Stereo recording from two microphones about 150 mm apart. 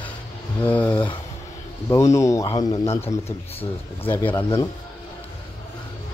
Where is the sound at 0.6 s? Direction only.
10° left (ahead or behind).